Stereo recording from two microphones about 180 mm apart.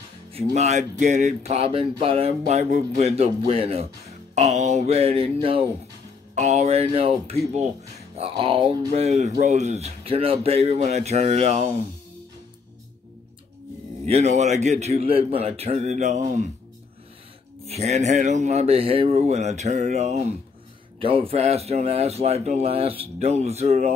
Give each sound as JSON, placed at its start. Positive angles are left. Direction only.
{"t": 0.6, "sound": "speech", "side_deg": -40}
{"t": 14.0, "sound": "speech", "side_deg": -40}
{"t": 17.6, "sound": "speech", "side_deg": -35}